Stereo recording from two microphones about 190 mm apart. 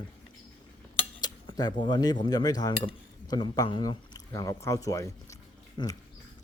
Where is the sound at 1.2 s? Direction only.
20° left (ahead or behind).